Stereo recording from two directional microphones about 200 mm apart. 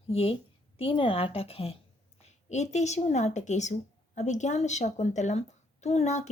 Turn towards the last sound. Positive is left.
turn(degrees=35)  # may be behind; listen again after turning